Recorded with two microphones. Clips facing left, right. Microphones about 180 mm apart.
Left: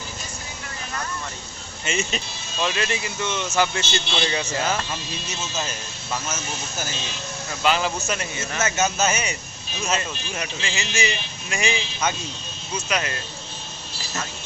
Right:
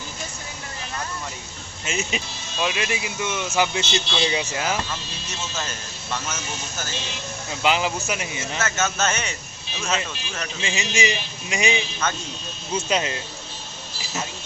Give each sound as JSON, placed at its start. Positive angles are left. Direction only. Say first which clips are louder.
{"t": 1.8, "sound": "speech", "louder": "left 1 dB", "side_deg": 0}
{"t": 6.1, "sound": "speech", "louder": "left 1 dB", "side_deg": 5}
{"t": 7.6, "sound": "speech", "louder": "even", "side_deg": -15}
{"t": 8.5, "sound": "speech", "louder": "left 2 dB", "side_deg": 15}
{"t": 10.6, "sound": "speech", "louder": "right 4 dB", "side_deg": -20}
{"t": 12.0, "sound": "speech", "louder": "left 3 dB", "side_deg": 15}
{"t": 12.7, "sound": "speech", "louder": "right 3 dB", "side_deg": -25}